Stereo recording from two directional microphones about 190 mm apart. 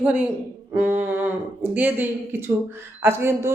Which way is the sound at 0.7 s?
10° right (ahead or behind).